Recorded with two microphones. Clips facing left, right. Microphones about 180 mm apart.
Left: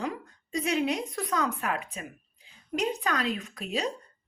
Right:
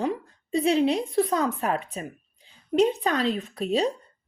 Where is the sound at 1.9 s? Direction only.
35° right (ahead or behind).